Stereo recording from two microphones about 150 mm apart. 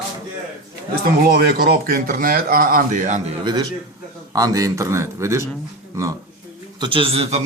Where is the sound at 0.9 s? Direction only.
90° right; by 3.3 s 55° right (ahead or behind).